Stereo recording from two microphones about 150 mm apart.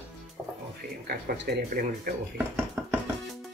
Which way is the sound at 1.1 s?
90° right.